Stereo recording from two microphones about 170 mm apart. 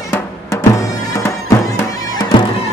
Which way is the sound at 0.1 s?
15° left (ahead or behind).